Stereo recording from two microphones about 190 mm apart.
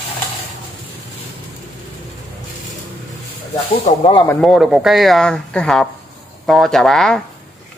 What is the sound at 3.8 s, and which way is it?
Speech, 30° left (ahead or behind).